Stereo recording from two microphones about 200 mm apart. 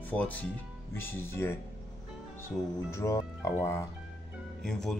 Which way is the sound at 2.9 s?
15° left (ahead or behind).